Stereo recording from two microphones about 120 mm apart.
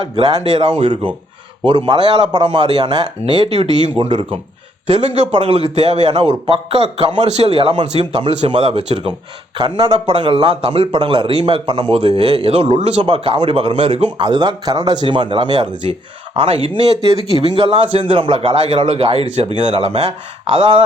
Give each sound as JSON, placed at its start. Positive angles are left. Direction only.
{"t": 0.6, "sound": "a man's voice", "side_deg": -45}
{"t": 4.9, "sound": "a man's voice", "side_deg": -75}
{"t": 5.3, "sound": "a man's voice", "side_deg": -50}
{"t": 6.1, "sound": "a man's voice", "side_deg": -50}
{"t": 9.6, "sound": "a man's voice", "side_deg": -45}
{"t": 14.2, "sound": "speech", "side_deg": -40}
{"t": 15.9, "sound": "a man's voice", "side_deg": -50}